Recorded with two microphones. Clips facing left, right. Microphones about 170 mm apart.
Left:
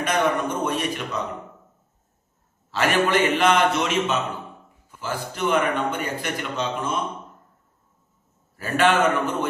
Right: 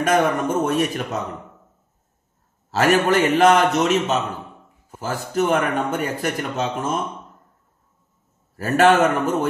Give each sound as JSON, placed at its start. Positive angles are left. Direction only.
{"t": 0.0, "sound": "a man's voice", "side_deg": -45}
{"t": 2.7, "sound": "a man's voice", "side_deg": -40}
{"t": 8.5, "sound": "a man's voice", "side_deg": -45}